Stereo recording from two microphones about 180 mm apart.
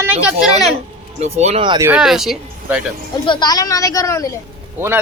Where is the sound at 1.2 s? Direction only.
40° right (ahead or behind).